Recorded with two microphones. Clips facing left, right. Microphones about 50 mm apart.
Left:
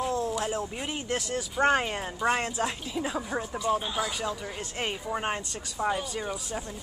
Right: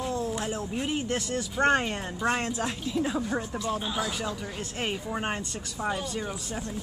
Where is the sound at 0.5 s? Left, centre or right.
Centre.